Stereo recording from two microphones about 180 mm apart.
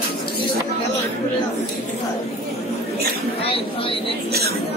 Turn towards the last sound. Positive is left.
turn(degrees=30)  # may be behind; listen again after turning